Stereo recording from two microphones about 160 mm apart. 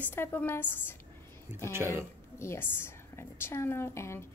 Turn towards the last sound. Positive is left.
turn(degrees=15)  # may be behind; listen again after turning